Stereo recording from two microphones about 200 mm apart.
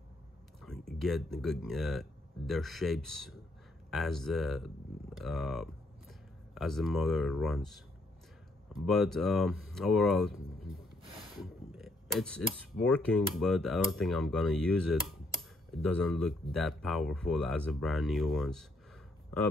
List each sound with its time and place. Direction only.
0.6 s speech: centre (ahead or behind)
11.3 s a sound: centre (ahead or behind)
13.4 s speech: centre (ahead or behind)